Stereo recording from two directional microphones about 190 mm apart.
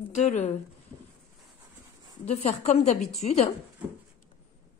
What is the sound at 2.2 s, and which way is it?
A woman's voice, 35° left (ahead or behind).